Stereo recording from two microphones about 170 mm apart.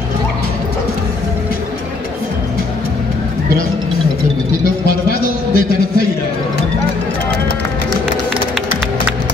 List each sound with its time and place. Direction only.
4.8 s music: 65° left (ahead or behind)